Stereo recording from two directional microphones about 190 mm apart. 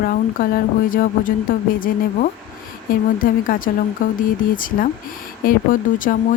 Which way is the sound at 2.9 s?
45° left (ahead or behind).